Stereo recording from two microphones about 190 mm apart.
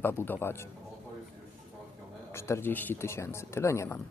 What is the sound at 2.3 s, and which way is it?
Speech, 15° left (ahead or behind).